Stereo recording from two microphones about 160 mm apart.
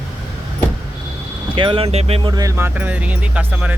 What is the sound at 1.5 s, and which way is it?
Speech, 30° right (ahead or behind).